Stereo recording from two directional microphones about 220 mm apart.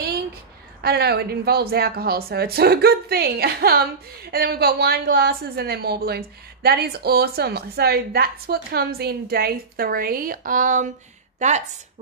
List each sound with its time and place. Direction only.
0.8 s a woman's voice: 45° right (ahead or behind)